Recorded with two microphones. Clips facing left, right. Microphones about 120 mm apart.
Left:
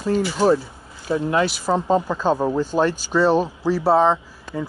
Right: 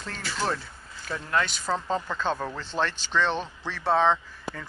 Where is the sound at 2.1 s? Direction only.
10° left (ahead or behind).